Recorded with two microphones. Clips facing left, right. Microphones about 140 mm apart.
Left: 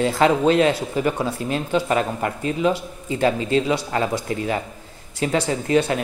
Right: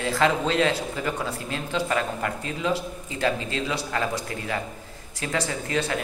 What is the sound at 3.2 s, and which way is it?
Speech, 25° left (ahead or behind).